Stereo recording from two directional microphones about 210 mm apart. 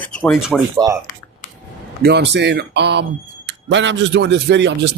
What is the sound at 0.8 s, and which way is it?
Speech, 15° right (ahead or behind).